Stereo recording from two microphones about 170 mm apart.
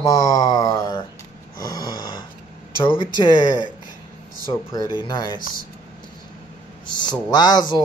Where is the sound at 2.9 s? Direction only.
25° left (ahead or behind).